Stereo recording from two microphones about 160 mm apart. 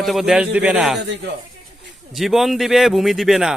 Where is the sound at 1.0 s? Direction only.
90° right.